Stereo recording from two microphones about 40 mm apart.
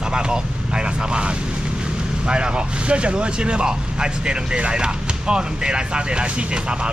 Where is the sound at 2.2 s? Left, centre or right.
Right.